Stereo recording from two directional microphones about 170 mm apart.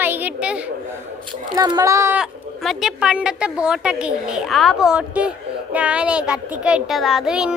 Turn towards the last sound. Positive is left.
turn(degrees=-5)  # may be behind; listen again after turning